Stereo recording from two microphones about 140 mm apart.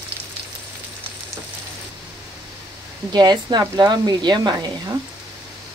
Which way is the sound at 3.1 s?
30° right (ahead or behind).